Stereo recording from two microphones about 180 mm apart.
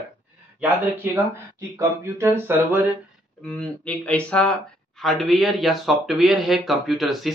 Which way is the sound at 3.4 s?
5° left (ahead or behind).